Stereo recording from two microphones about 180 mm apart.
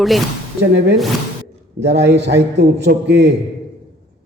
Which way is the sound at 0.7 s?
70° right (ahead or behind).